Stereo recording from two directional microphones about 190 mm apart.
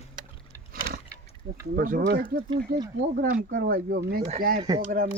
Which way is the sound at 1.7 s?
50° right (ahead or behind).